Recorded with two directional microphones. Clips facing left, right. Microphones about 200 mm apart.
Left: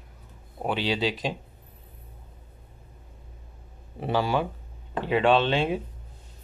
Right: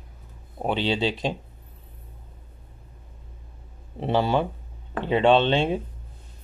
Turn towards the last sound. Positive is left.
turn(degrees=-25)  # may be behind; listen again after turning